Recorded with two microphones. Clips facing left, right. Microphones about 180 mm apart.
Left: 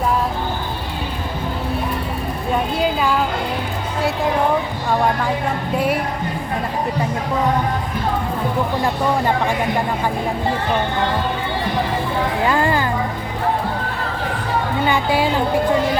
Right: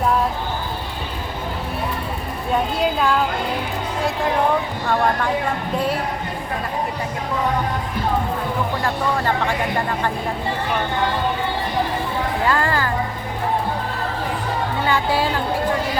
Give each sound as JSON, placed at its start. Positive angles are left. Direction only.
{"t": 2.7, "sound": "a woman's voice", "side_deg": 0}
{"t": 8.8, "sound": "speech", "side_deg": 15}
{"t": 12.5, "sound": "speech", "side_deg": 15}
{"t": 14.8, "sound": "speech", "side_deg": 15}